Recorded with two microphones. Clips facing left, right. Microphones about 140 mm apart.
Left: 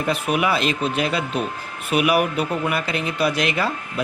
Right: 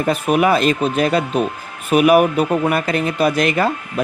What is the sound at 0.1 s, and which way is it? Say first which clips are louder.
Speech: right 6 dB; 45° right (ahead or behind).